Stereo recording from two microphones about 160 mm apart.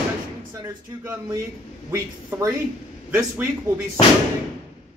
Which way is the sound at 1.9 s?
20° right (ahead or behind).